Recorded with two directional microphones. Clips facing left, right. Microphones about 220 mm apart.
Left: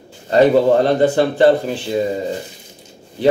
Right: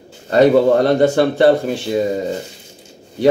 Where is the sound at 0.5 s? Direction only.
45° right (ahead or behind).